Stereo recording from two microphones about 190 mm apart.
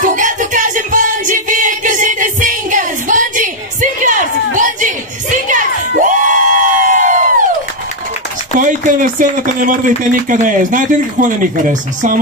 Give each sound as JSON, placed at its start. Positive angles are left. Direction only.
{"t": 0.0, "sound": "music", "side_deg": -40}
{"t": 8.5, "sound": "speech", "side_deg": -45}